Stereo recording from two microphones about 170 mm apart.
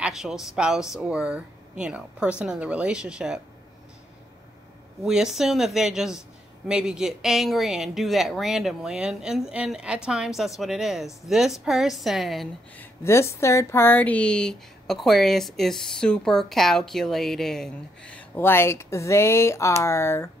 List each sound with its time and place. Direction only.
0.0 s speech: centre (ahead or behind)
5.0 s speech: 5° right (ahead or behind)
13.0 s speech: 15° left (ahead or behind)